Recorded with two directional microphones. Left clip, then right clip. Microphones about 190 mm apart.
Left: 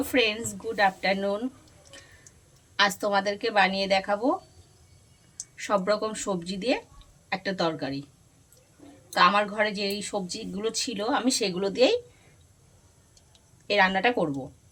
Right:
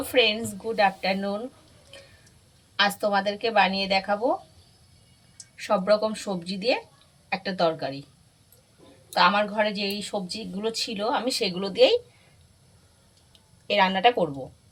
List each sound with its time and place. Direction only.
0.1 s speech: 25° left (ahead or behind)
2.7 s speech: 25° left (ahead or behind)
5.6 s speech: 25° left (ahead or behind)
9.1 s speech: 25° left (ahead or behind)
13.7 s a woman's voice: 15° left (ahead or behind)